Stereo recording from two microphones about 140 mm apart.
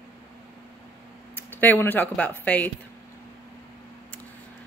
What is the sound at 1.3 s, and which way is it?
Speech, 15° left (ahead or behind).